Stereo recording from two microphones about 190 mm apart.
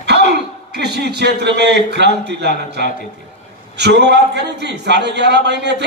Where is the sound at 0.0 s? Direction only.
65° right (ahead or behind).